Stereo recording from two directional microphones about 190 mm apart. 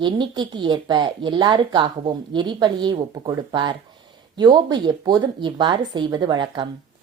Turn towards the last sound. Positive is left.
turn(degrees=-25)  # may be behind; listen again after turning